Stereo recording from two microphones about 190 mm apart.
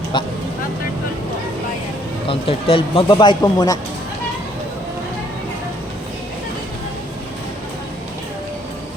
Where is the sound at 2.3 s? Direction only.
30° left (ahead or behind).